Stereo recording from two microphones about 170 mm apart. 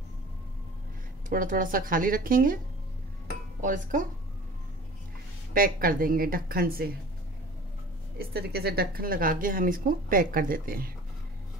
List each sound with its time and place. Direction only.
1.3 s speech: 55° right (ahead or behind)
3.6 s speech: 50° right (ahead or behind)
5.5 s speech: 55° right (ahead or behind)
8.2 s speech: 65° right (ahead or behind)